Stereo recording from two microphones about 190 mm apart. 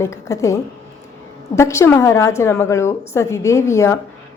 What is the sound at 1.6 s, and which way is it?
A woman's voice, 15° left (ahead or behind).